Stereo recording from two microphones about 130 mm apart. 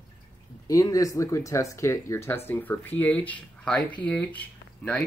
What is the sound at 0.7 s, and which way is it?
Speech, 25° left (ahead or behind).